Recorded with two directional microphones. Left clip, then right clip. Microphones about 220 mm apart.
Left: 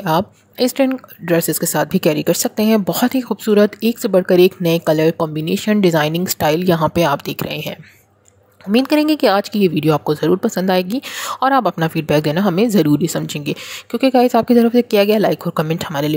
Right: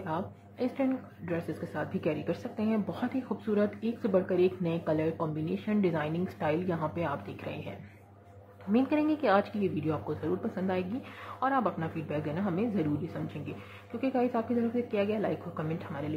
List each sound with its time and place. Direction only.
0.0 s speech: 50° left (ahead or behind)
8.7 s speech: 50° left (ahead or behind)